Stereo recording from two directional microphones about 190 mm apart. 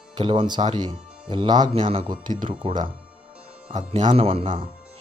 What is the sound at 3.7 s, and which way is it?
Speech, 40° right (ahead or behind).